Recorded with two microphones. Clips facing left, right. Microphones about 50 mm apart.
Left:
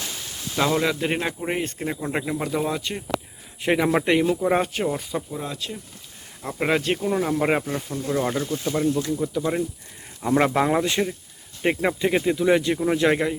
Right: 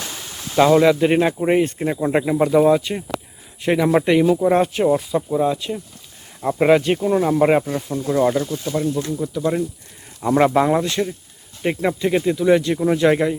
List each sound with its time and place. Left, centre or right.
0.5 s speech: centre
5.4 s speech: centre
8.4 s speech: centre
9.0 s speech: centre